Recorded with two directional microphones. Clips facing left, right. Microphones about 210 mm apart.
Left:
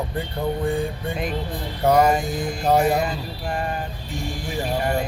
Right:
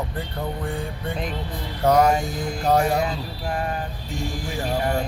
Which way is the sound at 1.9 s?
5° left (ahead or behind).